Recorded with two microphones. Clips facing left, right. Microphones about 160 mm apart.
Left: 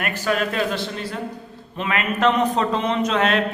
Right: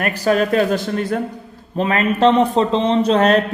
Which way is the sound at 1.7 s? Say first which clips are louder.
Right 6 dB; 35° right (ahead or behind).